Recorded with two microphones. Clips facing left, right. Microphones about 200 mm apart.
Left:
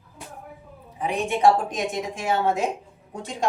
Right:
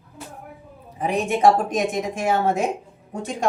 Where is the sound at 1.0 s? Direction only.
45° right (ahead or behind).